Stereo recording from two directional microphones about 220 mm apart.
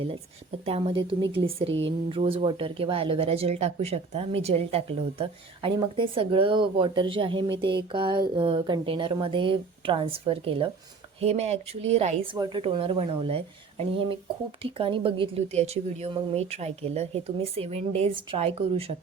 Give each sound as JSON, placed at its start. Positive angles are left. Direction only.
{"t": 0.6, "sound": "speech", "side_deg": -25}
{"t": 1.4, "sound": "a woman's voice", "side_deg": -55}
{"t": 2.0, "sound": "speech", "side_deg": -25}
{"t": 14.6, "sound": "speech", "side_deg": -25}